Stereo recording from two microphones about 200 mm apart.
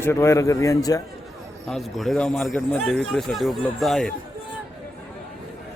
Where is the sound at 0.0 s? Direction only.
15° left (ahead or behind).